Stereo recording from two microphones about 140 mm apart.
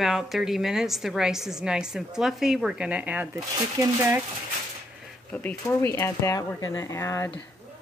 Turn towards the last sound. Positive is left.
turn(degrees=20)  # may be behind; listen again after turning